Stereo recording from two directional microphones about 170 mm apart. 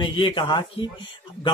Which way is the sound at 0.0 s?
30° left (ahead or behind).